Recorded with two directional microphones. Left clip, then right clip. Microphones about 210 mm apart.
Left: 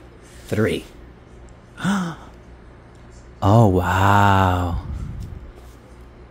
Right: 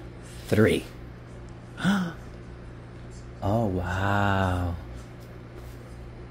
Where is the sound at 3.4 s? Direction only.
35° left (ahead or behind); by 4.7 s 20° left (ahead or behind).